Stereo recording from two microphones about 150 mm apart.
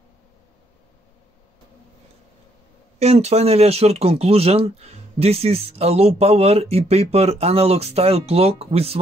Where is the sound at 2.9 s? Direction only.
45° right (ahead or behind).